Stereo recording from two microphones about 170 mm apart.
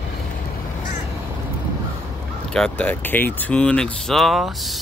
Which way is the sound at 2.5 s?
5° left (ahead or behind).